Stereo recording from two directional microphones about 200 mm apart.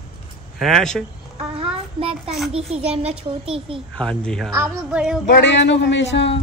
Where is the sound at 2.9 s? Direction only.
30° right (ahead or behind).